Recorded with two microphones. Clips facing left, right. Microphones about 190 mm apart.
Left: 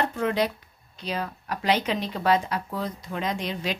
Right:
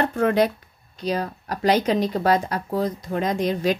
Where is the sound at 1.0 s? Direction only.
40° right (ahead or behind).